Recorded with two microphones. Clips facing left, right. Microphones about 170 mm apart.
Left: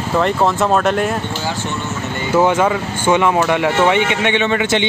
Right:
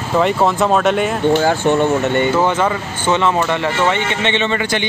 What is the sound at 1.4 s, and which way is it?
Speech, 55° right (ahead or behind).